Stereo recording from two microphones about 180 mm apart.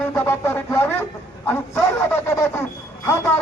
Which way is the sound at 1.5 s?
10° left (ahead or behind).